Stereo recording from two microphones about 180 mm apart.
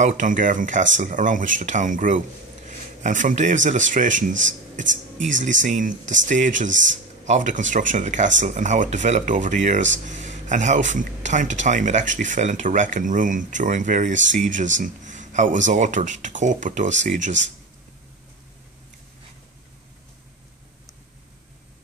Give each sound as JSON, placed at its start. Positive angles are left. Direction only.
{"t": 0.0, "sound": "speech", "side_deg": -45}
{"t": 6.7, "sound": "speech", "side_deg": -90}
{"t": 7.2, "sound": "speech", "side_deg": -45}
{"t": 10.0, "sound": "a sound", "side_deg": -45}
{"t": 10.5, "sound": "speech", "side_deg": -45}